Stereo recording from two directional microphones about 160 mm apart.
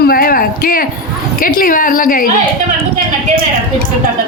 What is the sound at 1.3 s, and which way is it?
Speech, 60° left (ahead or behind).